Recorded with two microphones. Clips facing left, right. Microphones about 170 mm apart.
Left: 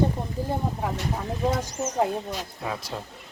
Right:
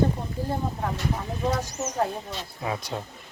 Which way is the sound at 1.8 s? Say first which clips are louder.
Left 2 dB; 10° left (ahead or behind).